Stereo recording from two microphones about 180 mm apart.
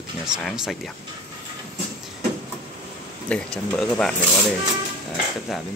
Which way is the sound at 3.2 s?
5° left (ahead or behind).